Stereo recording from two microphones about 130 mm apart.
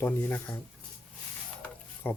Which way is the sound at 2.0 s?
15° left (ahead or behind).